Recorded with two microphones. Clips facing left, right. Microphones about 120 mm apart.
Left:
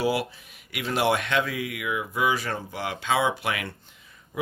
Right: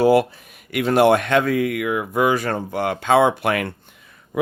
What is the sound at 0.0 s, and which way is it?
Speech, 50° right (ahead or behind).